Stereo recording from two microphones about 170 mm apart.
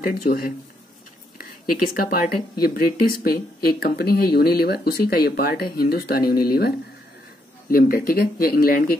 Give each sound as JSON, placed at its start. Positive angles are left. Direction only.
{"t": 0.0, "sound": "speech", "side_deg": 60}
{"t": 7.7, "sound": "speech", "side_deg": 60}